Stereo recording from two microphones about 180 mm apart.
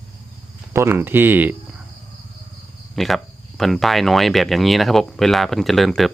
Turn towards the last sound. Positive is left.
turn(degrees=0)  # may be behind; listen again after turning